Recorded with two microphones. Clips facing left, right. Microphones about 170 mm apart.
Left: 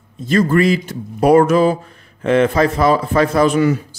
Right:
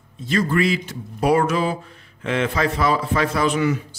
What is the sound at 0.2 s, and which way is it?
Speech, 45° left (ahead or behind).